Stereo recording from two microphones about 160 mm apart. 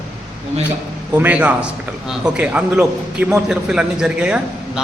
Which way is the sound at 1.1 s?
10° right (ahead or behind).